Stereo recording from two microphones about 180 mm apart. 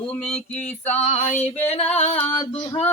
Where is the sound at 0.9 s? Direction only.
35° left (ahead or behind).